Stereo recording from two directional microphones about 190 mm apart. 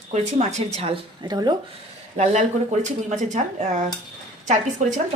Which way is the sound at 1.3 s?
20° right (ahead or behind).